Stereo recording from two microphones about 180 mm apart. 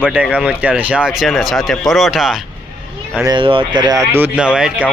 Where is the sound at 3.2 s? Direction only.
25° right (ahead or behind); by 4.8 s 5° right (ahead or behind).